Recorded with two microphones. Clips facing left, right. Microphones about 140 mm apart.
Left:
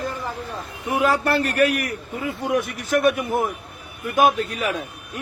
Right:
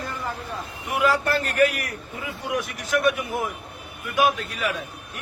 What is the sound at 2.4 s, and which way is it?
A man's voice, 55° left (ahead or behind).